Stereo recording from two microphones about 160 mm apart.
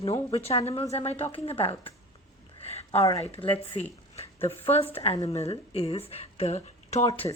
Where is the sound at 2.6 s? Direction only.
40° left (ahead or behind).